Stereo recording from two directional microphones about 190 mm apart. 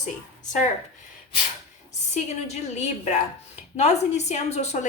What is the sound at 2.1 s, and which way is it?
A woman's voice, 35° left (ahead or behind).